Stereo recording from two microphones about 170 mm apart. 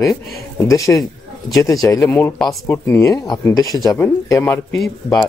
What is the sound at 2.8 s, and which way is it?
Speech, 15° left (ahead or behind).